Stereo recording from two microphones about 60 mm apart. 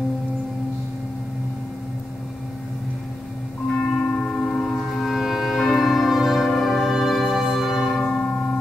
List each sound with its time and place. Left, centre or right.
3.9 s singing bowl: left
4.4 s music: centre
7.8 s church bell: left